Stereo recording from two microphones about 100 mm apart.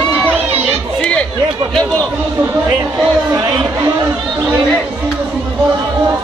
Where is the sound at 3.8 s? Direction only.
35° right (ahead or behind).